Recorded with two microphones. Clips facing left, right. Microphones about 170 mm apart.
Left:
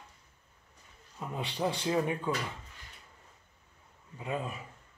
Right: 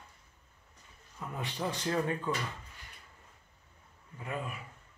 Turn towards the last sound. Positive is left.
turn(degrees=25)  # may be behind; listen again after turning